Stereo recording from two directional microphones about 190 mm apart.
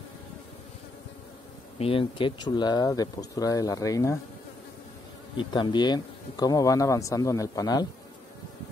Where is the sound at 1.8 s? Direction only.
30° left (ahead or behind).